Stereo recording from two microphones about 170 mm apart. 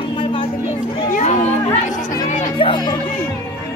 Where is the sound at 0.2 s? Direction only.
30° left (ahead or behind).